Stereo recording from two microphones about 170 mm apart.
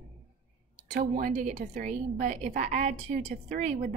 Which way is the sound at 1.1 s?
50° right (ahead or behind).